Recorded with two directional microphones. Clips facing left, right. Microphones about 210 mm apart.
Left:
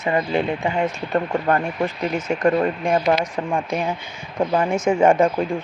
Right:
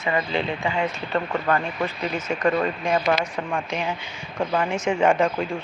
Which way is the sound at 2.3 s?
45° left (ahead or behind).